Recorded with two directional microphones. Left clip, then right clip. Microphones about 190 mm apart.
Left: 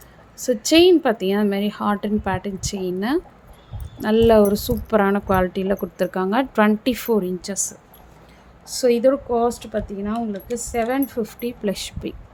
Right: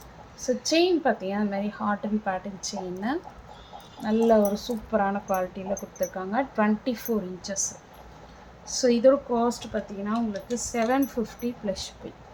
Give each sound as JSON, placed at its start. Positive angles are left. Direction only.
{"t": 0.4, "sound": "speech", "side_deg": 55}
{"t": 4.0, "sound": "speech", "side_deg": 60}